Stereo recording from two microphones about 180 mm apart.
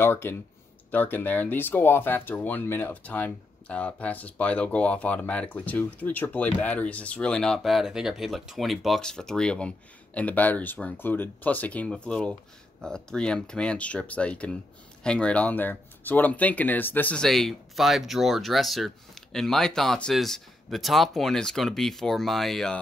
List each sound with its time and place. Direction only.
0.0 s speech: 15° left (ahead or behind)